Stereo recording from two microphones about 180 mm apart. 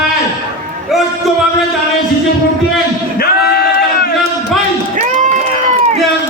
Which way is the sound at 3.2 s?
60° left (ahead or behind).